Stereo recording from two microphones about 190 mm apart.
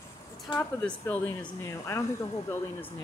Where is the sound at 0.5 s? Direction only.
5° left (ahead or behind).